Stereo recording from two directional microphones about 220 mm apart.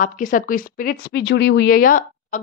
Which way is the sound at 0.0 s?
40° left (ahead or behind).